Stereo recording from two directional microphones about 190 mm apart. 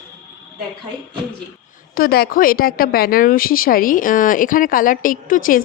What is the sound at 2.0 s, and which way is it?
A woman's voice, 55° left (ahead or behind).